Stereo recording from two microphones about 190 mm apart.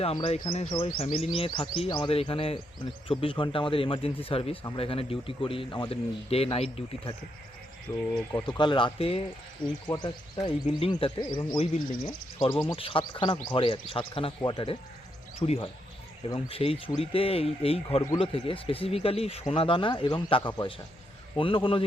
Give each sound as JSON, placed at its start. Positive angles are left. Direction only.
{"t": 0.0, "sound": "a man's voice", "side_deg": 30}
{"t": 8.3, "sound": "a man's voice", "side_deg": 20}